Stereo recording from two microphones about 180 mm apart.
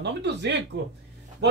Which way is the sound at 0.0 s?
70° right (ahead or behind).